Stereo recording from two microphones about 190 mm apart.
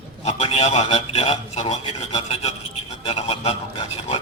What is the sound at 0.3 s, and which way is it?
Speech, 35° left (ahead or behind).